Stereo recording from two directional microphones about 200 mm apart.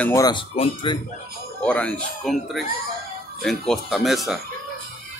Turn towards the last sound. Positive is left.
turn(degrees=0)  # may be behind; listen again after turning